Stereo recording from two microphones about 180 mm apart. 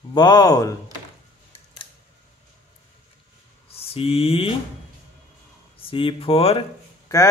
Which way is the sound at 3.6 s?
35° left (ahead or behind).